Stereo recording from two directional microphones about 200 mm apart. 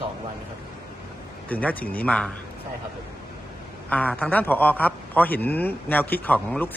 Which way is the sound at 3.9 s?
5° left (ahead or behind).